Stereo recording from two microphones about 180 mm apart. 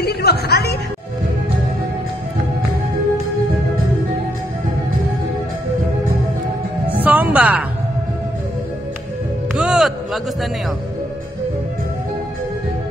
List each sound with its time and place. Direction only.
0.0 s music: 65° left (ahead or behind)
6.9 s music: 10° right (ahead or behind)
9.5 s music: 5° right (ahead or behind)